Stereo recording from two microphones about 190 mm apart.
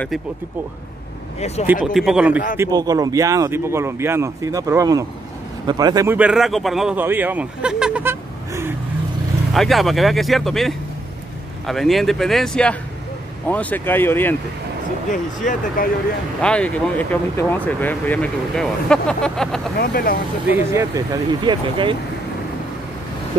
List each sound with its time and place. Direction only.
1.7 s speech: centre (ahead or behind)
2.5 s a man's voice: 15° right (ahead or behind)
6.1 s speech: 5° right (ahead or behind)
9.5 s speech: centre (ahead or behind)
15.0 s speech: 45° left (ahead or behind)
16.3 s speech: 5° left (ahead or behind)
19.8 s speech: 50° left (ahead or behind)
20.5 s speech: 15° right (ahead or behind)